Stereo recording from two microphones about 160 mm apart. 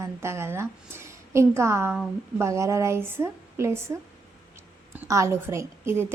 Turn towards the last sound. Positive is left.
turn(degrees=-15)  # may be behind; listen again after turning